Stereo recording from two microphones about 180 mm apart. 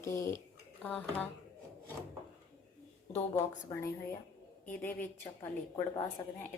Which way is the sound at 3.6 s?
15° left (ahead or behind).